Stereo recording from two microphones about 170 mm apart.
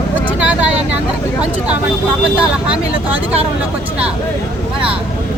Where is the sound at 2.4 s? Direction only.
5° right (ahead or behind).